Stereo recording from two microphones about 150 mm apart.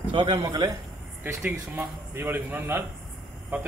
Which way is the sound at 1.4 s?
5° right (ahead or behind).